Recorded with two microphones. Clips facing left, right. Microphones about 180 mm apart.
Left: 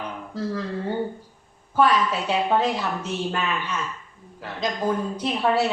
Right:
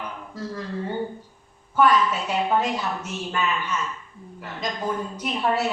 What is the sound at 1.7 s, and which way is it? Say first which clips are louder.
A woman's voice: even; 30° left (ahead or behind).